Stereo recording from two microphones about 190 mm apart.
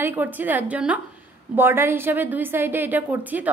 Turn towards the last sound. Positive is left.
turn(degrees=-10)  # may be behind; listen again after turning